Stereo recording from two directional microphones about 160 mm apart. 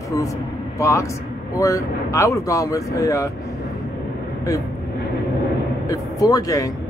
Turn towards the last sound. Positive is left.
turn(degrees=20)  # may be behind; listen again after turning